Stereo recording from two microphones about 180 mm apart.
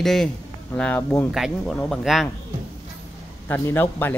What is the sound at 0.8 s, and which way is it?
Speech, 5° left (ahead or behind).